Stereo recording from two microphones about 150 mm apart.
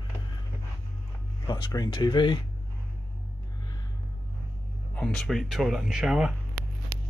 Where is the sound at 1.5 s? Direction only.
25° left (ahead or behind).